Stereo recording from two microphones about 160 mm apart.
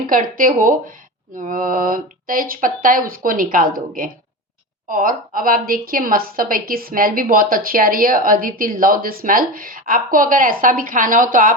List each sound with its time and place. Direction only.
0.1 s a woman's voice: 60° right (ahead or behind)